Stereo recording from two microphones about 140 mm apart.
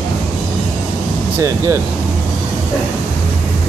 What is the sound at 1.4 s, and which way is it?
Speech, 20° right (ahead or behind).